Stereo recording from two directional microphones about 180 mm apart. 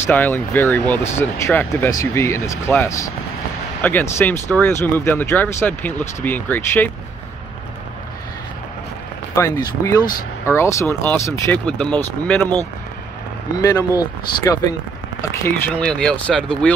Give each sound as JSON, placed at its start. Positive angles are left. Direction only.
{"t": 0.0, "sound": "speech", "side_deg": 10}
{"t": 9.3, "sound": "speech", "side_deg": 15}
{"t": 13.6, "sound": "speech", "side_deg": 20}